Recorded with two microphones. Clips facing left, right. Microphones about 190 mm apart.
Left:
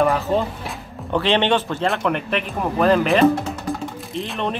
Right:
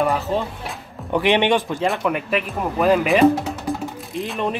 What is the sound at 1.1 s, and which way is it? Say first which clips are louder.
Speech: right 1 dB; 15° right (ahead or behind).